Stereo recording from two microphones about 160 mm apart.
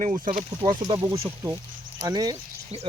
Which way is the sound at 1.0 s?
15° right (ahead or behind).